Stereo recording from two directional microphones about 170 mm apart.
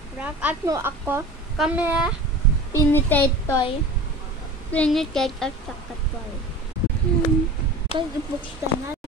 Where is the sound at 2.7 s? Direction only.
10° left (ahead or behind).